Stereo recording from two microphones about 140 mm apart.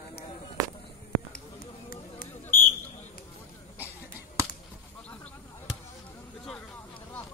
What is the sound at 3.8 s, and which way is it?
Cough, 15° right (ahead or behind).